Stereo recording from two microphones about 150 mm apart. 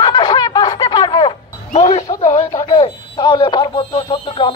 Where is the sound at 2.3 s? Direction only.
30° left (ahead or behind).